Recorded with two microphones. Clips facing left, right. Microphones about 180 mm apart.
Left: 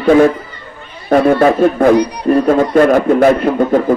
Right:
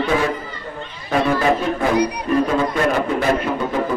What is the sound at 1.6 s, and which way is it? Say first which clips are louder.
A man's voice: left 9 dB; 50° left (ahead or behind).